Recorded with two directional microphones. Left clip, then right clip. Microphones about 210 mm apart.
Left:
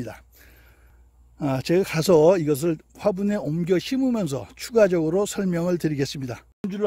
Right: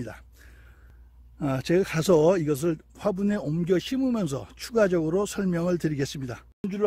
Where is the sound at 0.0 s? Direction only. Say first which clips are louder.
Left 3 dB; 35° left (ahead or behind).